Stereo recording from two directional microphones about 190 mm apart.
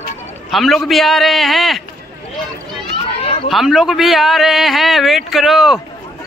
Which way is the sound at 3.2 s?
30° left (ahead or behind).